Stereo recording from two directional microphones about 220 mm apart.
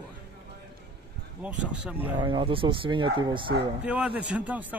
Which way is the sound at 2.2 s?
25° right (ahead or behind).